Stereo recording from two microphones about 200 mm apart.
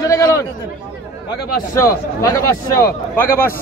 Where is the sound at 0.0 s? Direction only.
15° left (ahead or behind).